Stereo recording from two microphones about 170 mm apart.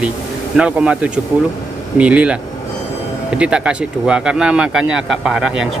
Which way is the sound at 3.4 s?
5° right (ahead or behind).